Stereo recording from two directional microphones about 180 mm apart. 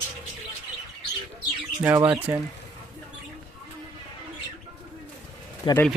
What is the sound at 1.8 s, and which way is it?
Speech, 10° right (ahead or behind).